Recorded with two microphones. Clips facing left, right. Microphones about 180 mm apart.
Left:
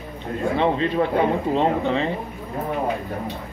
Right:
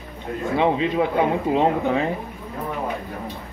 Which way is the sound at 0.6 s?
10° right (ahead or behind).